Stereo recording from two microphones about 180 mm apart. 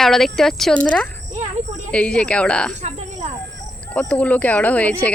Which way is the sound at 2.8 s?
40° right (ahead or behind).